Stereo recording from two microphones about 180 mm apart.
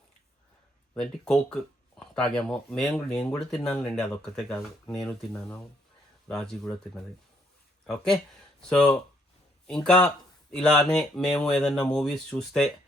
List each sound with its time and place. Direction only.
0.9 s speech: 5° left (ahead or behind)
7.9 s speech: 5° left (ahead or behind)